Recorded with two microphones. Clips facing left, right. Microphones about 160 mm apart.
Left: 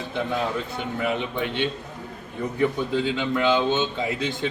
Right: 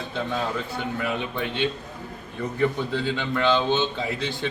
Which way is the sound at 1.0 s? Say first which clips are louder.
Left 5 dB; 20° left (ahead or behind).